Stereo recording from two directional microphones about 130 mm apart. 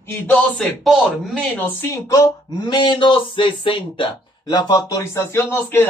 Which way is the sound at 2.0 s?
30° left (ahead or behind).